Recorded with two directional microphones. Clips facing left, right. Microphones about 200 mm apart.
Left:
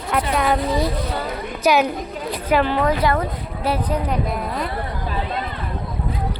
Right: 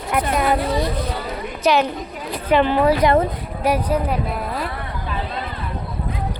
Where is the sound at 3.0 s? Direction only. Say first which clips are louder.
Right 4 dB; 15° right (ahead or behind).